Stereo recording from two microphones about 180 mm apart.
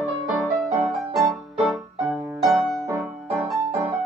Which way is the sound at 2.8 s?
15° right (ahead or behind).